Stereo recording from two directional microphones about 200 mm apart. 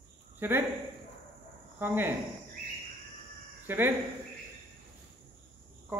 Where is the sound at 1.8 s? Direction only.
10° right (ahead or behind).